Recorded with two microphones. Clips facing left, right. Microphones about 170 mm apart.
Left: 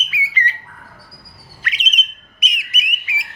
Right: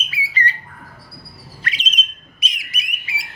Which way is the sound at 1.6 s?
30° right (ahead or behind).